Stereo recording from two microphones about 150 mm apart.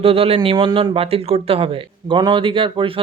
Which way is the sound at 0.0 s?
40° right (ahead or behind).